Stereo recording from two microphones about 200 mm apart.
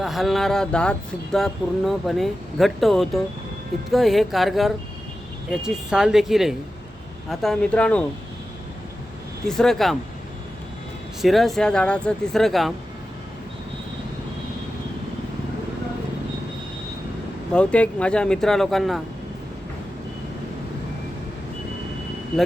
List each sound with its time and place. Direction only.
0.0 s speech: centre (ahead or behind)
9.5 s speech: centre (ahead or behind)
11.2 s speech: centre (ahead or behind)
17.5 s speech: 5° left (ahead or behind)